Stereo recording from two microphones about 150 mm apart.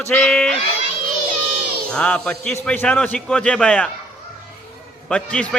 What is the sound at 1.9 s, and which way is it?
A man's voice, 5° left (ahead or behind).